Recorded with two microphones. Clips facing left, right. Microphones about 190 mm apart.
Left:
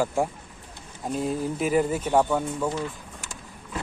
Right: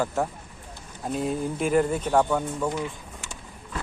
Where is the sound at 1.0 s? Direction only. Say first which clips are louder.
Even; centre (ahead or behind).